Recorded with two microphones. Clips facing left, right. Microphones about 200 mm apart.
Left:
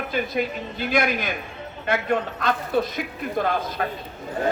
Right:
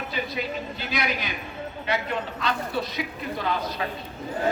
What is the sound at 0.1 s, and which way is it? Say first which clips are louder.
A man's voice: left 6 dB; 50° left (ahead or behind).